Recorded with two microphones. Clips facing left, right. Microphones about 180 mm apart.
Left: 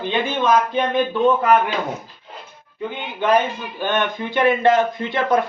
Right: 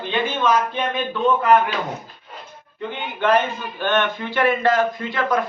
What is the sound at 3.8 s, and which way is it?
Speech, 10° left (ahead or behind).